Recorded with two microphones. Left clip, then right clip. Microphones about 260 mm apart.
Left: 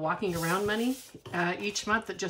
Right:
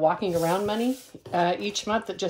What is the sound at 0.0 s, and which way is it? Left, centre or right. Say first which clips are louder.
Speech: right 8 dB; centre.